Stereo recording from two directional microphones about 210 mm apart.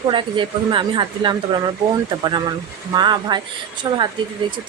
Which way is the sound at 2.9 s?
20° right (ahead or behind).